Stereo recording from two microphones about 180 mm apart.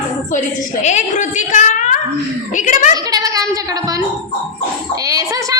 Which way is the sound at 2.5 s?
45° left (ahead or behind).